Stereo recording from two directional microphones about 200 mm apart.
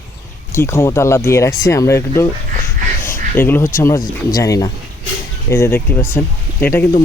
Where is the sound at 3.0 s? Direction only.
10° left (ahead or behind).